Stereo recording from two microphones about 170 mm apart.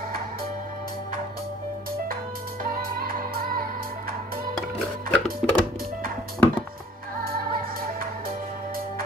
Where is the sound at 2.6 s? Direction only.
60° right (ahead or behind).